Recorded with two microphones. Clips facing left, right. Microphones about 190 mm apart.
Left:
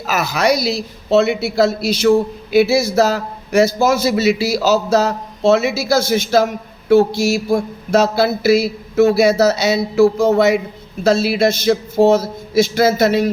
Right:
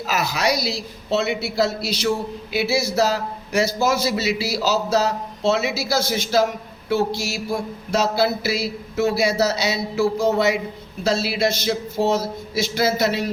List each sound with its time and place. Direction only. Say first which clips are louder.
0.1 s a man's voice: left 6 dB; 50° left (ahead or behind)